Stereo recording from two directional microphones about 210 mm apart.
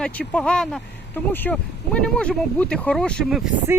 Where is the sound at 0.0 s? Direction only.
5° left (ahead or behind).